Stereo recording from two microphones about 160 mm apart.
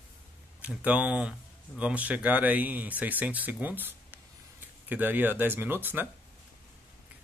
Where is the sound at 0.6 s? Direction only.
10° right (ahead or behind).